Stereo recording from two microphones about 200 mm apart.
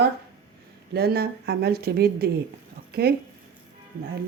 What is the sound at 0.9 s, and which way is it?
Speech, 50° right (ahead or behind).